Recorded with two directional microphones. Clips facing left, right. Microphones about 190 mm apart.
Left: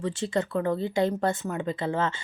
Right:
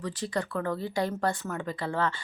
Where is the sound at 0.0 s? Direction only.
25° left (ahead or behind).